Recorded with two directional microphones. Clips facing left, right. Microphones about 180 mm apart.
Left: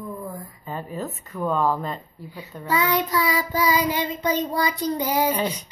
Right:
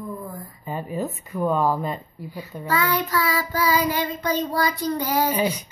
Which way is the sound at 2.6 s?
20° left (ahead or behind).